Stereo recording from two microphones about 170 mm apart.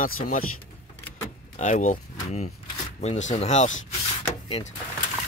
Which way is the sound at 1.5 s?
45° left (ahead or behind).